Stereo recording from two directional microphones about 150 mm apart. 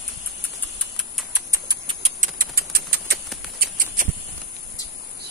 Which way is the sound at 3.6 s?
75° right (ahead or behind).